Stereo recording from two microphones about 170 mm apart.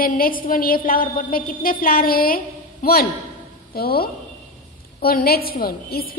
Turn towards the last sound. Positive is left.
turn(degrees=60)  # may be behind; listen again after turning